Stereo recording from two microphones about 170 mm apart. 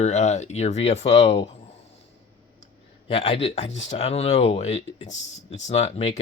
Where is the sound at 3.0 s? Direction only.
35° left (ahead or behind).